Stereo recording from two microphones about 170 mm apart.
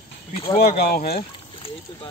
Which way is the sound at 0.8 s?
65° left (ahead or behind).